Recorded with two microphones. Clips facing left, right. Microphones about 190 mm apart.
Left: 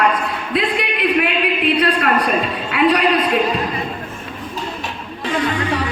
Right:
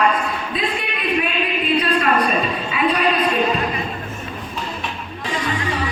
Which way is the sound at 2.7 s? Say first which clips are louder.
Left 7 dB; 70° left (ahead or behind).